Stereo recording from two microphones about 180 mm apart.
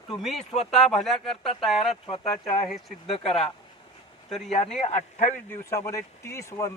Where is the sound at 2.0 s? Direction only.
35° left (ahead or behind).